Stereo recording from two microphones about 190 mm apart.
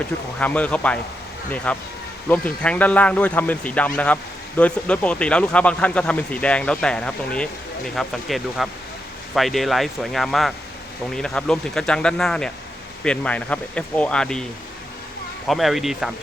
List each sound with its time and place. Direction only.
0.3 s speech: 5° left (ahead or behind)
15.4 s speech: centre (ahead or behind)